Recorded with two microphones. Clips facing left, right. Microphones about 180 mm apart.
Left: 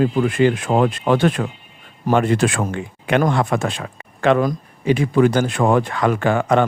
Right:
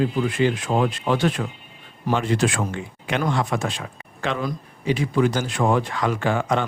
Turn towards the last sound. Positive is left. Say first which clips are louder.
# left 6 dB
turn(degrees=55)  # may be behind; listen again after turning